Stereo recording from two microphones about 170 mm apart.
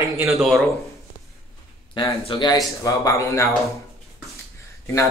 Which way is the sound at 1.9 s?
25° left (ahead or behind).